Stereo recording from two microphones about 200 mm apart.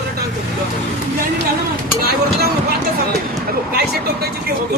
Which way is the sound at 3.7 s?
50° right (ahead or behind).